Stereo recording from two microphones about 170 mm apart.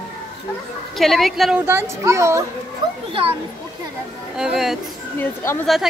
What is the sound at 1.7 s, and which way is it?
Speech, 15° right (ahead or behind).